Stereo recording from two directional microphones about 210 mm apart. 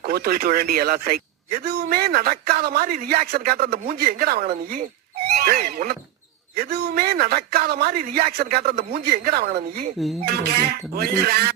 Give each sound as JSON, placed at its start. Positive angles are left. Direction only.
{"t": 0.0, "sound": "speech", "side_deg": -50}
{"t": 8.7, "sound": "a man's voice", "side_deg": -30}
{"t": 9.0, "sound": "speech", "side_deg": -45}